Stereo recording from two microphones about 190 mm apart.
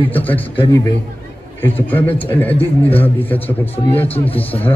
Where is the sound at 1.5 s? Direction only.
10° left (ahead or behind).